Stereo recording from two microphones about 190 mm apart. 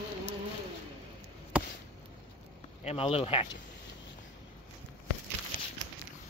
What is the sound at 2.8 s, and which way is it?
Speech, 30° left (ahead or behind).